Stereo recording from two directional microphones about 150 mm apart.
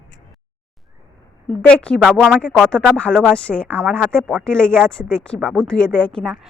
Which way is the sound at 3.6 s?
10° right (ahead or behind).